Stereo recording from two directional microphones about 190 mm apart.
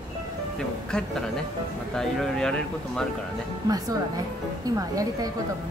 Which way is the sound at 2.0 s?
5° left (ahead or behind).